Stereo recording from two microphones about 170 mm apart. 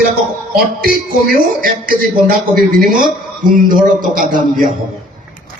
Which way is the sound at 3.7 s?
55° right (ahead or behind).